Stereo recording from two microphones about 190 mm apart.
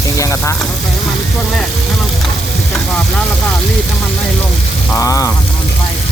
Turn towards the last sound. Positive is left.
turn(degrees=15)  # may be behind; listen again after turning